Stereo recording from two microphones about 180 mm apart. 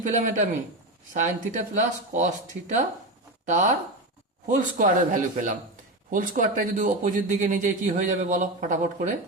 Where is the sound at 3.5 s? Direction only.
40° right (ahead or behind).